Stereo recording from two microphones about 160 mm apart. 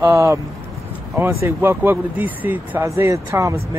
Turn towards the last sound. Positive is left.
turn(degrees=-20)  # may be behind; listen again after turning